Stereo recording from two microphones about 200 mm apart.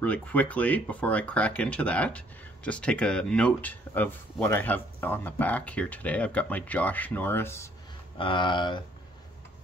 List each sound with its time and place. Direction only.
0.0 s speech: 5° left (ahead or behind)
8.2 s speech: 25° left (ahead or behind)